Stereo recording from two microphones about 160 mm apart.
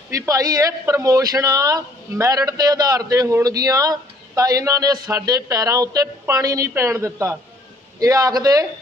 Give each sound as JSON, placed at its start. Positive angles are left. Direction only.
{"t": 0.1, "sound": "a man's voice", "side_deg": -20}